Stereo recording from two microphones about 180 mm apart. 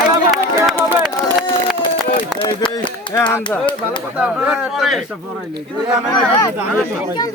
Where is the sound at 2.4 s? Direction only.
25° left (ahead or behind).